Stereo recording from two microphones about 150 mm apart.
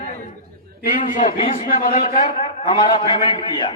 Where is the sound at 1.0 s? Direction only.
60° left (ahead or behind).